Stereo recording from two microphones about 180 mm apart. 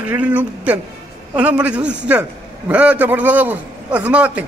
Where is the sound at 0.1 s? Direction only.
10° right (ahead or behind).